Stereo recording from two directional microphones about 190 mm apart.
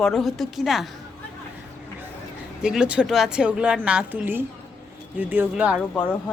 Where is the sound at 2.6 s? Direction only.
5° right (ahead or behind).